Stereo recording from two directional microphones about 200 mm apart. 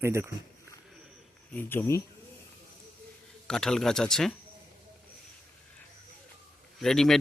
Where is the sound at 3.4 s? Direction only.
5° left (ahead or behind).